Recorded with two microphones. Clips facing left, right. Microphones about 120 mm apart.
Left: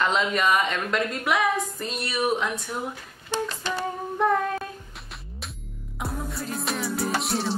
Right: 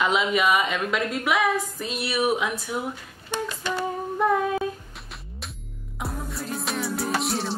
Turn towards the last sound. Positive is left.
turn(degrees=0)  # may be behind; listen again after turning